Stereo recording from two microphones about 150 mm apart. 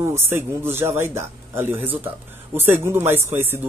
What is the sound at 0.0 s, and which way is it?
Speech, 15° right (ahead or behind).